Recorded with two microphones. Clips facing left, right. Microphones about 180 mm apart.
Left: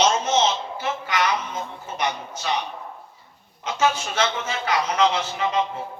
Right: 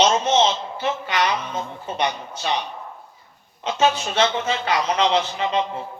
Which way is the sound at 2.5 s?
25° right (ahead or behind).